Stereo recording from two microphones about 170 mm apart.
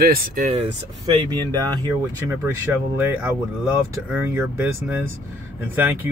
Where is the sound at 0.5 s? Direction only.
35° right (ahead or behind).